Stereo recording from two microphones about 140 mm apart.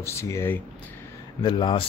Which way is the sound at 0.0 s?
20° left (ahead or behind).